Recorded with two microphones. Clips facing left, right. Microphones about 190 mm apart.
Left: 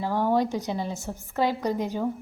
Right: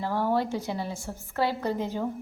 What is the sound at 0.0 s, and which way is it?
A woman's voice, 15° left (ahead or behind).